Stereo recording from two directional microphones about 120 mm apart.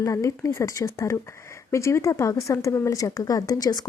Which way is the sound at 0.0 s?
25° left (ahead or behind).